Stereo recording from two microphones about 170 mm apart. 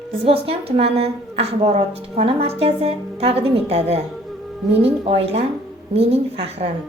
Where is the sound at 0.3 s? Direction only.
35° right (ahead or behind).